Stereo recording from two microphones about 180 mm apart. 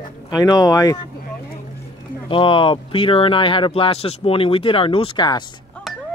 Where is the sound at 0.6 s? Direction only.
20° left (ahead or behind).